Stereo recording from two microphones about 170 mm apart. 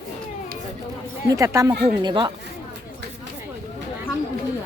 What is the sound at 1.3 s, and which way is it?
Speech, 20° right (ahead or behind).